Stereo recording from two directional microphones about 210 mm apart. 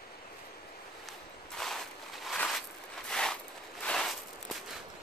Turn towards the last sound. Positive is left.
turn(degrees=0)  # may be behind; listen again after turning